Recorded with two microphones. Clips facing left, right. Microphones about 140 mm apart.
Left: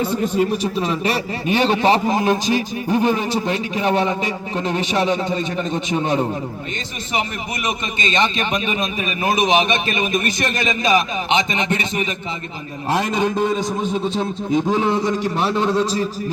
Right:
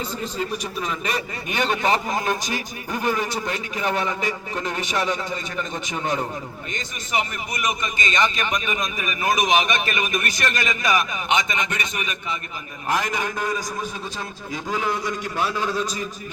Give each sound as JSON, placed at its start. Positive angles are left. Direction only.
{"t": 0.3, "sound": "a man's voice", "side_deg": 25}
{"t": 7.6, "sound": "a man's voice", "side_deg": 25}